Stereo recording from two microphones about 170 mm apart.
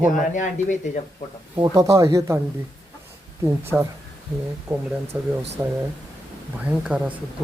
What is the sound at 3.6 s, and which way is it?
Speech, 15° right (ahead or behind).